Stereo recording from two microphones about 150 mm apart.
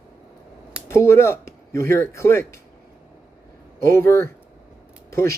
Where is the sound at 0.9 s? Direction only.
15° left (ahead or behind).